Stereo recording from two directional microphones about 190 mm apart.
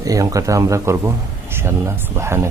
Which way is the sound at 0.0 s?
20° right (ahead or behind).